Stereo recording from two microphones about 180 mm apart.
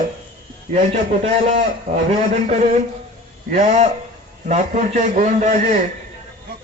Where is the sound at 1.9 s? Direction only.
40° right (ahead or behind).